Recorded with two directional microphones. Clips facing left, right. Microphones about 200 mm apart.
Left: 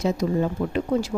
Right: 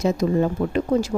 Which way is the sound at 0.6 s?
55° right (ahead or behind).